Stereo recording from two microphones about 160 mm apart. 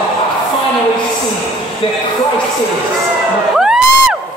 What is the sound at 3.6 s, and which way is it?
Crowd, 5° right (ahead or behind).